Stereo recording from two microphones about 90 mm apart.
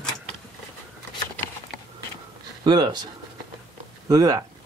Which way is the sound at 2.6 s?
55° right (ahead or behind).